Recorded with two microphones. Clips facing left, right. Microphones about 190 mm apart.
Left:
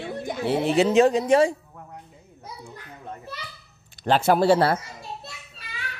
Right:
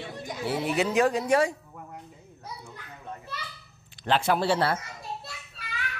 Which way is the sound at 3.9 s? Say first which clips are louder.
Left 5 dB; 40° left (ahead or behind).